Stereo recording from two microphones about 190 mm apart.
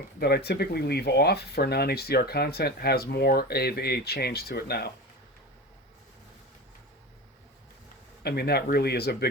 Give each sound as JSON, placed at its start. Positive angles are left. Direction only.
{"t": 0.2, "sound": "speech", "side_deg": 55}
{"t": 8.2, "sound": "speech", "side_deg": 55}